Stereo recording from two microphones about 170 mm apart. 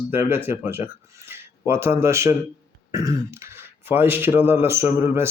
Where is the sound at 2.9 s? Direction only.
20° right (ahead or behind).